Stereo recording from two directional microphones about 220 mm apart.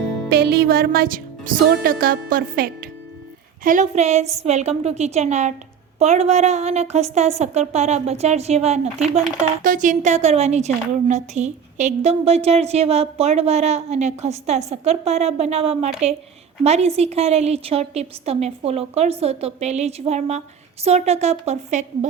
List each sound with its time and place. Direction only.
0.3 s a woman's voice: 45° right (ahead or behind)